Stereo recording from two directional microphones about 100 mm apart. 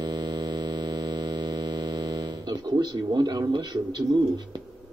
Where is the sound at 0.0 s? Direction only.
50° right (ahead or behind).